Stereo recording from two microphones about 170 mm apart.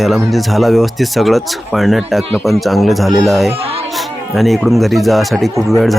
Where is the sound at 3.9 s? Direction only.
Centre (ahead or behind).